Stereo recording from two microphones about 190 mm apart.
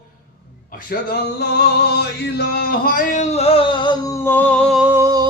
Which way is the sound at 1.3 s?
60° left (ahead or behind).